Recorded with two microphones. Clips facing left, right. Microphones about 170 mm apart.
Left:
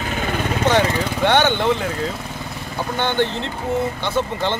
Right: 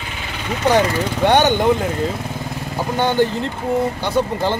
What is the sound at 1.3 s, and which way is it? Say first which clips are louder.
Speech: right 3 dB; 40° right (ahead or behind).